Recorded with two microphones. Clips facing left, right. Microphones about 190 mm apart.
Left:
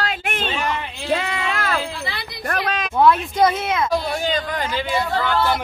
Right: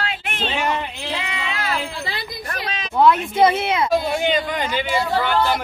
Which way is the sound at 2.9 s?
5° right (ahead or behind).